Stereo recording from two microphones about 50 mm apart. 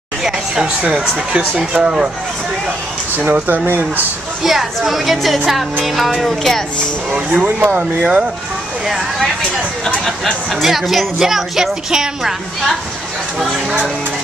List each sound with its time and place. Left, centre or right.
0.2 s speech: centre
3.2 s speech: right
3.4 s speech: right
4.4 s speech: centre
7.4 s speech: right
8.0 s speech: right
8.8 s speech: centre